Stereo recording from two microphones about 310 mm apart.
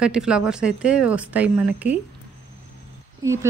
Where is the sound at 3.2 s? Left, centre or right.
Centre.